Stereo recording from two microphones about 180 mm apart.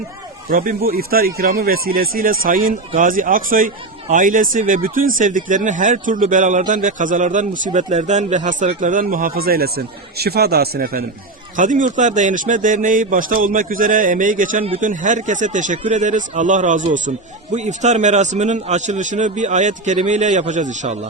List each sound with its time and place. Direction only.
0.5 s speech: 50° right (ahead or behind)
11.5 s a man's voice: 45° right (ahead or behind)